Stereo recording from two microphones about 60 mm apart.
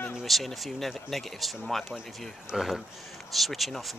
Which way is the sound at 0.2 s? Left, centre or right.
Centre.